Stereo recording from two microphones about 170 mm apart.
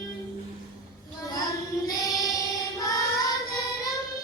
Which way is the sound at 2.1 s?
20° left (ahead or behind).